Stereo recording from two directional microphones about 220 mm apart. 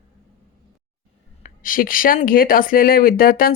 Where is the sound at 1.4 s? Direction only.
40° left (ahead or behind).